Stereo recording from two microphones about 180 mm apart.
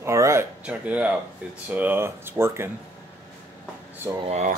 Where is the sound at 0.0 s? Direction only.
15° right (ahead or behind).